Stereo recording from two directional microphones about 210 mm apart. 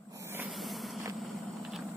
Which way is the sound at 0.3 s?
5° right (ahead or behind).